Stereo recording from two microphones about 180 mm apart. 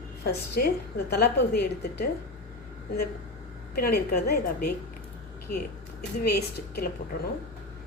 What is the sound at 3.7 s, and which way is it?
Speech, 55° left (ahead or behind).